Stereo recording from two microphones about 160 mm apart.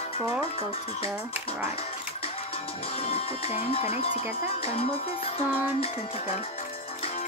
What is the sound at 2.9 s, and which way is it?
Speech, 40° left (ahead or behind).